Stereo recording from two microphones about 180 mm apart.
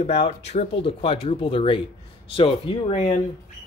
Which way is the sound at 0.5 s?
35° left (ahead or behind).